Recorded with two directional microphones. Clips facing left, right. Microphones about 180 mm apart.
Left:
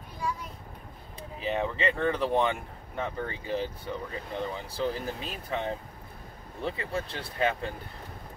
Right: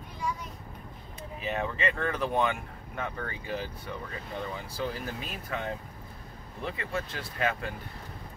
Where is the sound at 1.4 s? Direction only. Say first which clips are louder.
Left 2 dB; 30° left (ahead or behind).